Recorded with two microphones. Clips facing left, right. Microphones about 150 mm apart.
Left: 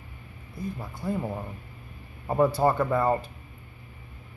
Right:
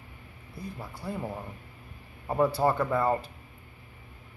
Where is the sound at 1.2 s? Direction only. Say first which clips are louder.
Left 3 dB; 20° left (ahead or behind).